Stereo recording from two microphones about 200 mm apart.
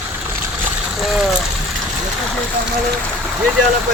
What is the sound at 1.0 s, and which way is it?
Speech, centre (ahead or behind).